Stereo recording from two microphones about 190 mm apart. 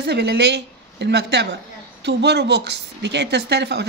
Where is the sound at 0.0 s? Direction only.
60° right (ahead or behind).